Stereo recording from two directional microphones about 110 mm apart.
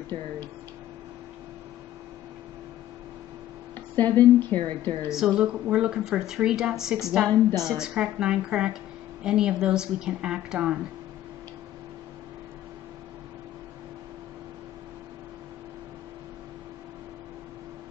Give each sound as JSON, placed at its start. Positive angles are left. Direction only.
{"t": 0.1, "sound": "speech", "side_deg": -70}
{"t": 3.9, "sound": "a woman's voice", "side_deg": 15}
{"t": 5.1, "sound": "a woman's voice", "side_deg": -5}